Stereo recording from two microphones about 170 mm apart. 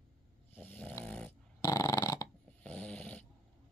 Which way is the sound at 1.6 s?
20° left (ahead or behind).